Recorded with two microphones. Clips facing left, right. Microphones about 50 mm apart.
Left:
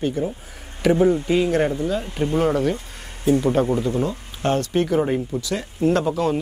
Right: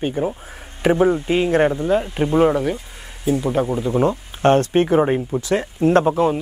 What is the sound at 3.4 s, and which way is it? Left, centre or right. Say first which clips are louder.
Speech: left 1 dB; centre.